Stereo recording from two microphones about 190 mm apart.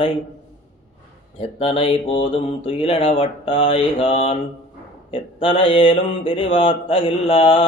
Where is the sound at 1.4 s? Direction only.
30° left (ahead or behind).